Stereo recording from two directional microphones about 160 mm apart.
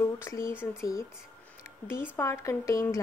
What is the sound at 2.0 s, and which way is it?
Speech, 15° left (ahead or behind).